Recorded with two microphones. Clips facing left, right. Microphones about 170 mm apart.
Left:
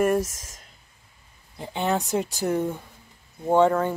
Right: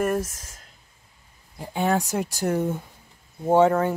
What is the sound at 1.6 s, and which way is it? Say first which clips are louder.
Speech: right 2 dB; centre (ahead or behind).